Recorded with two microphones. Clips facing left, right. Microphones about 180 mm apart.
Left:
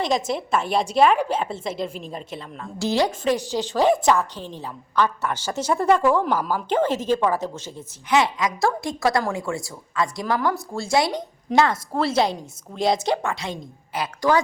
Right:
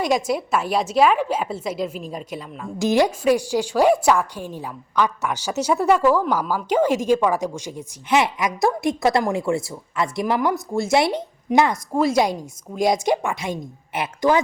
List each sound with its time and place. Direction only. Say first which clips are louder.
0.0 s a woman's voice: right 2 dB; 10° right (ahead or behind)